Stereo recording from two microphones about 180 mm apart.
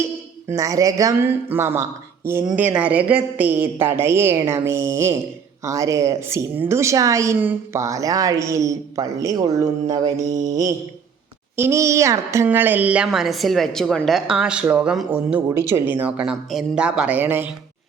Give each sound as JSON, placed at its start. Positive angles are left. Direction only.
{"t": 0.0, "sound": "a woman's voice", "side_deg": -15}
{"t": 10.3, "sound": "mantra", "side_deg": -45}
{"t": 11.5, "sound": "a woman's voice", "side_deg": -15}